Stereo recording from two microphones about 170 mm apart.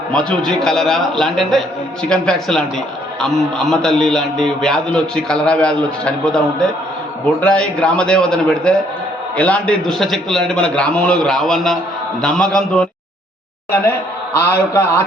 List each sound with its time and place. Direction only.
0.1 s a man's voice: 5° left (ahead or behind)
14.3 s a man's voice: 15° left (ahead or behind)